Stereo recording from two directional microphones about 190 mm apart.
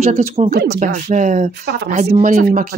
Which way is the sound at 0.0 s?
35° right (ahead or behind).